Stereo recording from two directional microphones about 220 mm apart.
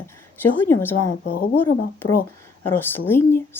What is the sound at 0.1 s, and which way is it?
Speech, 10° left (ahead or behind).